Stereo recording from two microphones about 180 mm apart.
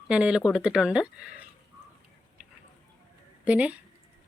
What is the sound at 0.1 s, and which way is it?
Speech, 5° right (ahead or behind).